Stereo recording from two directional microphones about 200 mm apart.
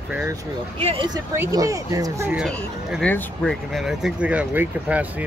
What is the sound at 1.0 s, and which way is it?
Speech, 15° right (ahead or behind).